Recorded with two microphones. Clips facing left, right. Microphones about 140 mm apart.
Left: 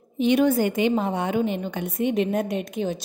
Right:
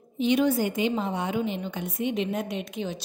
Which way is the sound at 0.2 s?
55° left (ahead or behind).